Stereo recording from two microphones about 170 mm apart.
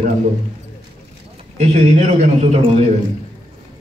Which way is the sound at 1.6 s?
40° right (ahead or behind).